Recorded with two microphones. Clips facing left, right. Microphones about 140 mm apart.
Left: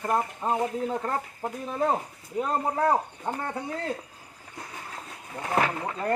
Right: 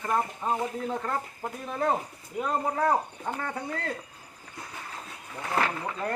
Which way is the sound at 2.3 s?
25° left (ahead or behind).